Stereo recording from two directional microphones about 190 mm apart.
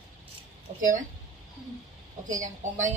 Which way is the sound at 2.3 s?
40° right (ahead or behind).